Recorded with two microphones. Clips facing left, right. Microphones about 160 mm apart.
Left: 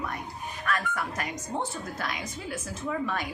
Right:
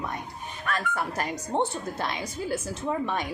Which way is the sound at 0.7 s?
30° right (ahead or behind).